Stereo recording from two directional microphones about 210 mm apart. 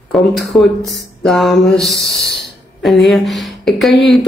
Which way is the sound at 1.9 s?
55° left (ahead or behind).